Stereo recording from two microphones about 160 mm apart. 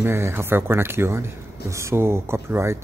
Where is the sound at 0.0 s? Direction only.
15° right (ahead or behind).